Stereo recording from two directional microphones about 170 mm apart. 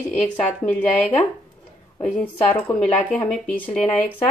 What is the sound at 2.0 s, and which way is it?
Speech, 10° left (ahead or behind).